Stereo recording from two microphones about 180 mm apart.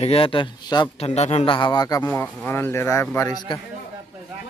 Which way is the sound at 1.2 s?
35° left (ahead or behind).